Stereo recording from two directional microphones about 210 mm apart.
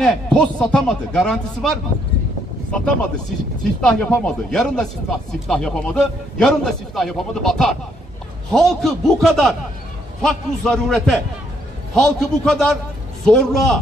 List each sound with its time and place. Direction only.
0.0 s speech: 5° left (ahead or behind)